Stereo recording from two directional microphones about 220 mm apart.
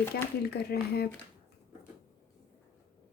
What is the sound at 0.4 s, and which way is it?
Speech, 45° left (ahead or behind).